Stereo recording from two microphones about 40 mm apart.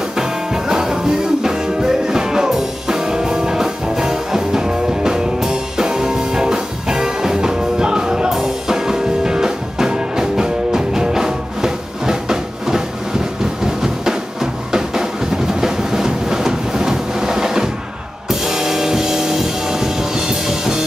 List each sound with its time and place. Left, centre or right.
0.1 s music: centre
13.8 s drum: centre
15.6 s a sound: centre
18.3 s music: centre